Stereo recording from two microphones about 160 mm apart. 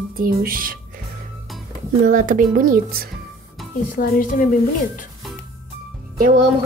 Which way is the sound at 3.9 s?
60° left (ahead or behind).